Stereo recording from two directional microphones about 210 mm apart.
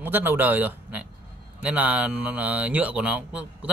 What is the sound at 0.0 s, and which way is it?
A man's voice, 10° right (ahead or behind).